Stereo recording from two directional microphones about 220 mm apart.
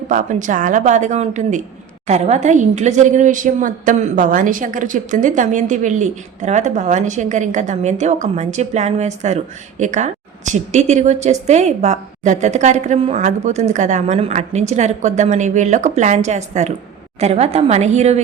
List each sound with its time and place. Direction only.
0.1 s a woman's voice: 35° right (ahead or behind)